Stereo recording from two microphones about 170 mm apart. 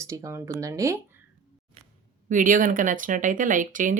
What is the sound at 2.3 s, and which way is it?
Speech, 50° right (ahead or behind).